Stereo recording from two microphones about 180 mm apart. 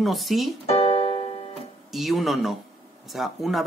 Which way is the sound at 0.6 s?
35° left (ahead or behind).